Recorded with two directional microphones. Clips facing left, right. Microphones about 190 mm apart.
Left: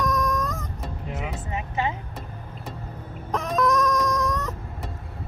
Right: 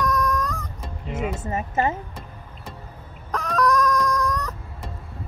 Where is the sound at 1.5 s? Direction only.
45° right (ahead or behind).